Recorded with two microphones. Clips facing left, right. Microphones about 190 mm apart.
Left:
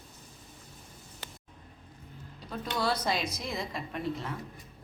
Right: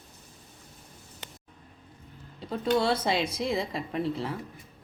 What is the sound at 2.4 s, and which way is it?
A woman's voice, 25° right (ahead or behind).